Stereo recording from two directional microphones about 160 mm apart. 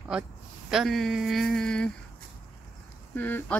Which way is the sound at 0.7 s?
Centre (ahead or behind).